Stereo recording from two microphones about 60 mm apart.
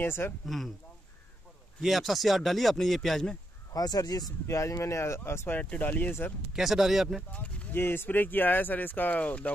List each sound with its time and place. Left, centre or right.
0.0 s speech: left
1.8 s speech: centre
3.7 s speech: left
4.5 s speech: left
5.5 s speech: left
6.5 s speech: centre
7.2 s speech: left
7.8 s speech: left